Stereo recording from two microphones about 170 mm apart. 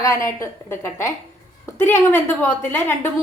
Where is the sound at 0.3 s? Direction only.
15° left (ahead or behind).